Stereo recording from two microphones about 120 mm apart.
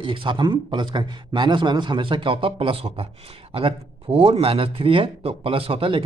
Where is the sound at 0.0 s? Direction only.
45° right (ahead or behind).